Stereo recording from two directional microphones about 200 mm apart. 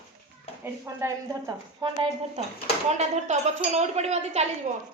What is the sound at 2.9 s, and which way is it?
Speech, 35° right (ahead or behind).